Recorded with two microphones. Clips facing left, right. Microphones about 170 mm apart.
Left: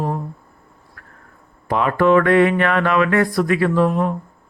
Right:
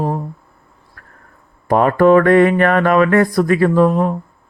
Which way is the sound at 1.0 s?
40° right (ahead or behind).